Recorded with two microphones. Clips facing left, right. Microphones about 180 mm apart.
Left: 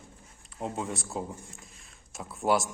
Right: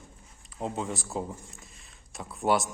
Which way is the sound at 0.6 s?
Centre (ahead or behind).